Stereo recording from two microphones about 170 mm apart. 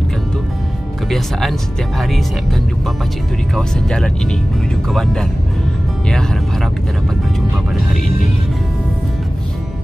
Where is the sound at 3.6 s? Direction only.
5° left (ahead or behind).